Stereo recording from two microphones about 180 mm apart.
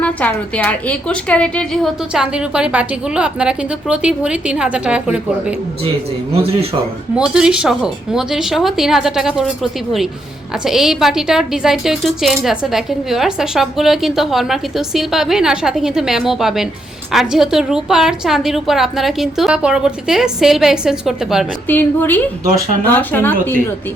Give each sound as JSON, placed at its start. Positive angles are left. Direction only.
{"t": 0.0, "sound": "a woman's voice", "side_deg": 10}
{"t": 6.3, "sound": "speech", "side_deg": -30}
{"t": 7.2, "sound": "a woman's voice", "side_deg": -5}
{"t": 21.7, "sound": "a woman's voice", "side_deg": 10}